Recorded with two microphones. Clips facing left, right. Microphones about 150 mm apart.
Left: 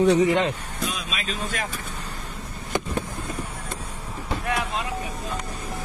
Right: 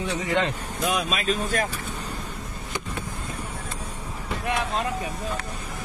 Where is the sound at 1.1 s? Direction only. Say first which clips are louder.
Right 5 dB; 40° right (ahead or behind).